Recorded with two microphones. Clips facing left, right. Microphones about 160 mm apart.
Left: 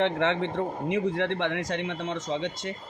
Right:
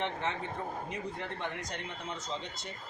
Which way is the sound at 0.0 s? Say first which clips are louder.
Left 10 dB; 85° left.